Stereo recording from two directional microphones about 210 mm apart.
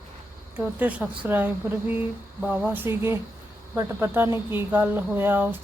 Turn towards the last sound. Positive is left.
turn(degrees=-10)  # may be behind; listen again after turning